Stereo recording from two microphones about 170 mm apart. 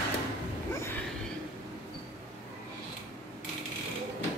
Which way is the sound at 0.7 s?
15° left (ahead or behind).